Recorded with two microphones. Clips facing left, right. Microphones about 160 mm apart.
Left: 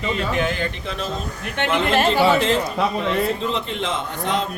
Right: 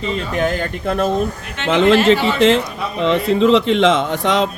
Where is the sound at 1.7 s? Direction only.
80° right.